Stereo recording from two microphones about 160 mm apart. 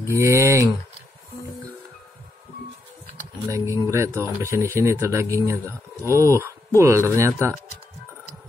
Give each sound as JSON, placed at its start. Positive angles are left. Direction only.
{"t": 0.1, "sound": "speech", "side_deg": -15}
{"t": 3.4, "sound": "speech", "side_deg": -20}